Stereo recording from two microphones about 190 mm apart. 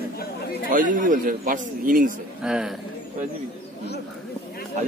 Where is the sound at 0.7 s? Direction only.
45° right (ahead or behind).